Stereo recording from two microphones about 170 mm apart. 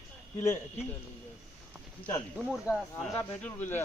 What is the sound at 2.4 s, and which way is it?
Speech, 5° right (ahead or behind).